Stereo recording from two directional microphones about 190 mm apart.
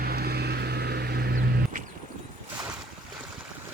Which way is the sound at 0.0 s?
55° right (ahead or behind).